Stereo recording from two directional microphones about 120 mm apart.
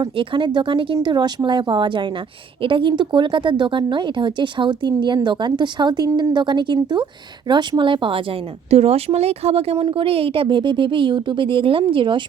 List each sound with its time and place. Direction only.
0.0 s a woman's voice: 40° right (ahead or behind)
8.7 s speech: 60° right (ahead or behind)
9.7 s a woman's voice: 45° right (ahead or behind)